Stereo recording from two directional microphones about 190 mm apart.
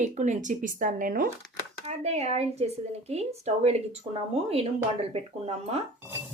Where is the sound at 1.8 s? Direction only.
35° right (ahead or behind).